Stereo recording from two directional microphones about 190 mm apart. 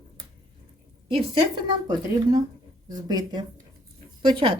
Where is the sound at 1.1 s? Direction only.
25° right (ahead or behind).